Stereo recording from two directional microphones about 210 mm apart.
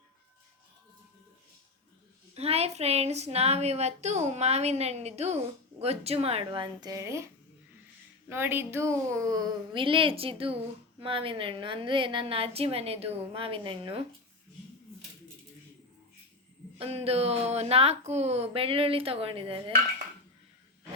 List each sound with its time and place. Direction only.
2.3 s a woman's voice: 30° right (ahead or behind); by 7.3 s 15° right (ahead or behind)
8.3 s a woman's voice: 10° right (ahead or behind)
16.7 s a woman's voice: 30° right (ahead or behind)